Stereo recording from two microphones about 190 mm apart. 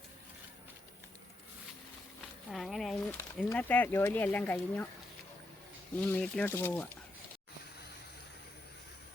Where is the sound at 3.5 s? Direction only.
10° left (ahead or behind).